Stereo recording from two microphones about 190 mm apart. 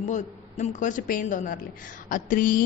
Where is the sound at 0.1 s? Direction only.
40° left (ahead or behind).